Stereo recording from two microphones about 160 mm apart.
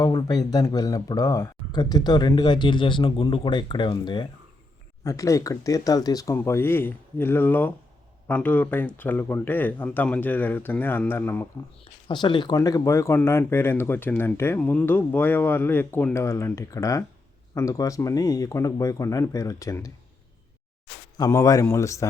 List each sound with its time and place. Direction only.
0.0 s speech: 25° left (ahead or behind)
12.0 s speech: 30° left (ahead or behind)
21.2 s speech: 20° left (ahead or behind)